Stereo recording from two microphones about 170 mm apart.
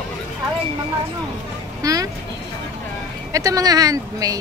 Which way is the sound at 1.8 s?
20° right (ahead or behind).